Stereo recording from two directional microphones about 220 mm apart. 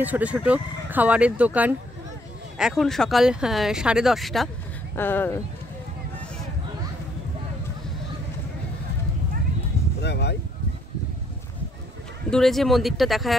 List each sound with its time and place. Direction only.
0.0 s speech: 5° right (ahead or behind); by 5.4 s 10° left (ahead or behind)
10.0 s a sound: 50° left (ahead or behind)
12.3 s speech: centre (ahead or behind)